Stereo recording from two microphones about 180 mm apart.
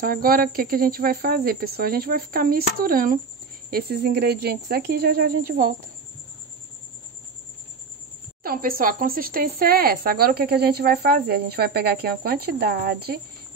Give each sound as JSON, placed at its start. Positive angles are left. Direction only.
{"t": 0.0, "sound": "speech", "side_deg": -55}
{"t": 8.4, "sound": "speech", "side_deg": -55}